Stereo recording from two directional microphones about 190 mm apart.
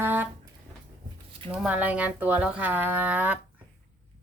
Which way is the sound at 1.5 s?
5° right (ahead or behind).